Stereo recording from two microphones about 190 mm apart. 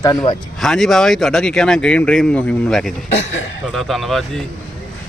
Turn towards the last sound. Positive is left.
turn(degrees=0)  # may be behind; listen again after turning